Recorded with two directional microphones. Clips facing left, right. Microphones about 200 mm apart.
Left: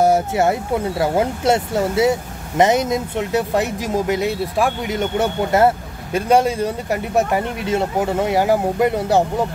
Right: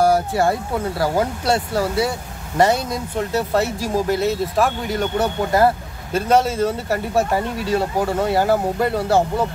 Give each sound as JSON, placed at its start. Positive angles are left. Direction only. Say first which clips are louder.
{"t": 0.0, "sound": "speech", "louder": "left 1 dB", "side_deg": 20}
{"t": 6.1, "sound": "speech", "louder": "left 1 dB", "side_deg": 10}